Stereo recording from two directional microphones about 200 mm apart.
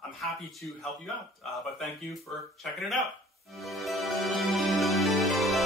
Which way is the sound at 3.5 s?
Centre (ahead or behind).